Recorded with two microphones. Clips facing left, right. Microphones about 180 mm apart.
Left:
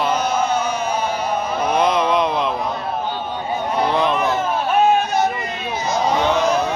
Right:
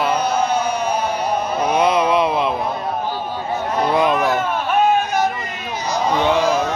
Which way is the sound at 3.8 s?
10° right (ahead or behind).